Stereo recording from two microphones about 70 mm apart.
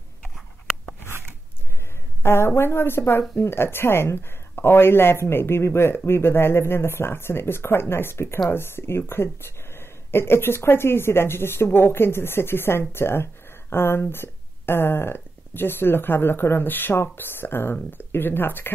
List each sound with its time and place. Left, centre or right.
2.2 s speech: left